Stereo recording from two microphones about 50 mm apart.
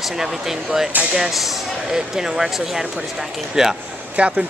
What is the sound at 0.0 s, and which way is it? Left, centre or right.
Speech, centre.